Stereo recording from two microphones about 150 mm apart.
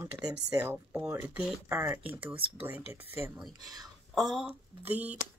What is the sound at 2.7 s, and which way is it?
Speech, 15° right (ahead or behind).